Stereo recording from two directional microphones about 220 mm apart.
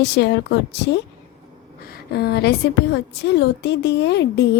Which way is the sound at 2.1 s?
45° left (ahead or behind).